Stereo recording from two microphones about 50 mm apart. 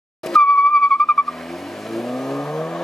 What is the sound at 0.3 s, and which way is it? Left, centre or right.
Vehicle, centre.